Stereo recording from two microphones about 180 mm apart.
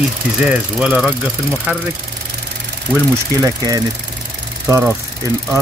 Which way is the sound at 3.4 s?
20° right (ahead or behind).